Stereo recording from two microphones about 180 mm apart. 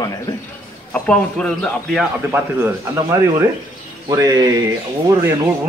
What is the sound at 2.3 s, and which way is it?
A man's voice, 15° right (ahead or behind).